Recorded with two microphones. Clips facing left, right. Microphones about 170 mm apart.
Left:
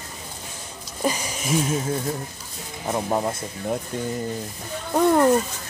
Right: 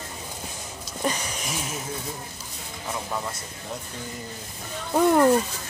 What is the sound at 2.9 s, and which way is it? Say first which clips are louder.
Speech: left 8 dB; 40° left (ahead or behind).